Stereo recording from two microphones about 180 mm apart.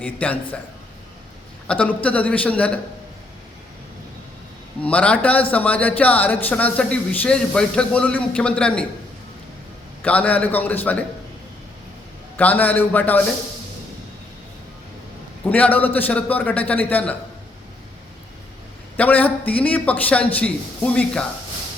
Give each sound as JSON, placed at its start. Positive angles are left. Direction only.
{"t": 0.0, "sound": "a man's voice", "side_deg": 10}
{"t": 1.6, "sound": "a man's voice", "side_deg": 5}
{"t": 4.8, "sound": "a man's voice", "side_deg": 5}
{"t": 10.0, "sound": "a man's voice", "side_deg": 10}
{"t": 12.4, "sound": "a man's voice", "side_deg": 10}
{"t": 15.4, "sound": "a man's voice", "side_deg": 10}
{"t": 18.9, "sound": "a man's voice", "side_deg": 10}